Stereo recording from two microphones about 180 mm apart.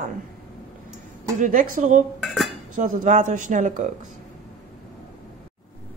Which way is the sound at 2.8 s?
45° right (ahead or behind).